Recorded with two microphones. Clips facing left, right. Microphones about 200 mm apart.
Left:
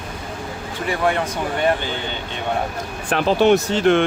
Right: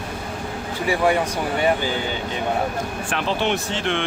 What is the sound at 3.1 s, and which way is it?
Speech, 40° left (ahead or behind).